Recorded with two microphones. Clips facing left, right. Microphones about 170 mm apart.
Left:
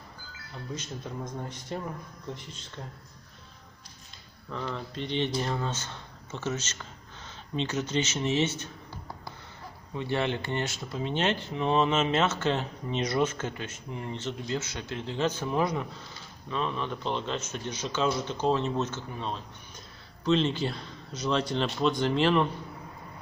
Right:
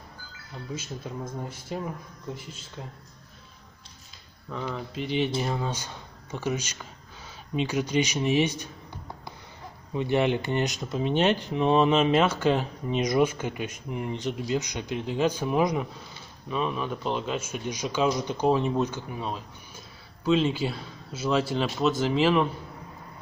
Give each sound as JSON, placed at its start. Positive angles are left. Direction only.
{"t": 0.7, "sound": "speech", "side_deg": -10}
{"t": 4.5, "sound": "speech", "side_deg": -5}
{"t": 9.9, "sound": "speech", "side_deg": -15}